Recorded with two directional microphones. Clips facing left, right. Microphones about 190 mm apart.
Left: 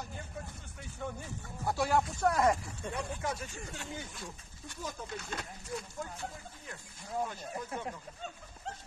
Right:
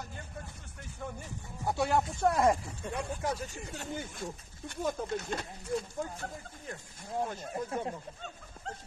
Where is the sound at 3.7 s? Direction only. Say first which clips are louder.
Right 7 dB; 45° right (ahead or behind).